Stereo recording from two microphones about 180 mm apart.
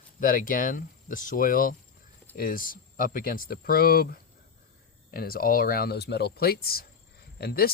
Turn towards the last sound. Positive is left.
turn(degrees=60)  # may be behind; listen again after turning